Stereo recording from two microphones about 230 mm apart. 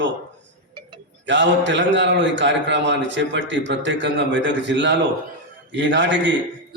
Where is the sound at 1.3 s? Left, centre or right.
Right.